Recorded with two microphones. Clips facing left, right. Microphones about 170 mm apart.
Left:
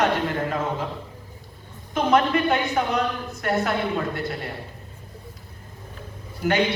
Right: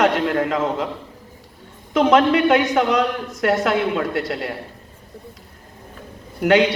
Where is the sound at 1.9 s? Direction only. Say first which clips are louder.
Right 5 dB; 90° right.